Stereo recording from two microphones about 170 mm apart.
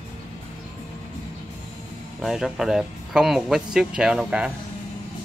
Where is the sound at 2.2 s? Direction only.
Centre (ahead or behind).